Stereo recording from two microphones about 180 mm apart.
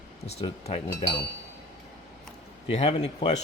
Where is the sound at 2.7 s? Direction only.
35° left (ahead or behind).